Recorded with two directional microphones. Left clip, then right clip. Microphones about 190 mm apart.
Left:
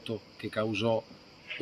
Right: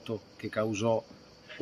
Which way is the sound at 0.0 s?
5° right (ahead or behind).